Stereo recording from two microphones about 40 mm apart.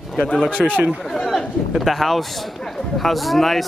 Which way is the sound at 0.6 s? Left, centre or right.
Centre.